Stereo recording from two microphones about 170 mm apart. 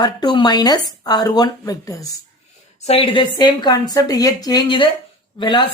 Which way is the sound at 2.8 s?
35° left (ahead or behind).